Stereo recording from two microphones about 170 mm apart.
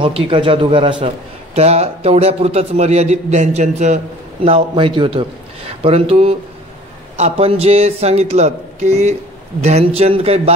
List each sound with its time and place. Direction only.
0.0 s a man's voice: 30° right (ahead or behind)
4.5 s a man's voice: 30° right (ahead or behind)